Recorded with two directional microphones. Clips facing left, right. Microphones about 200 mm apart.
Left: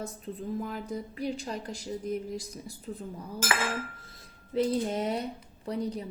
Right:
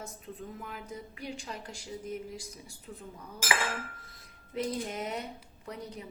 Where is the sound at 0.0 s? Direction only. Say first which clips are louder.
Left 6 dB; 35° left (ahead or behind).